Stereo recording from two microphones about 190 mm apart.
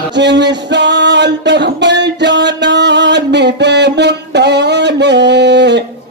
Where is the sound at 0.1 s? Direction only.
65° right (ahead or behind).